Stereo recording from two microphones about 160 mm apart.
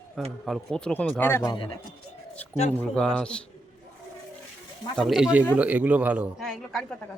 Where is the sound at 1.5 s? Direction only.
25° left (ahead or behind).